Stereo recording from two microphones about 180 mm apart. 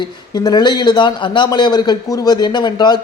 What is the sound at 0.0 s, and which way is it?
A man's voice, 20° left (ahead or behind).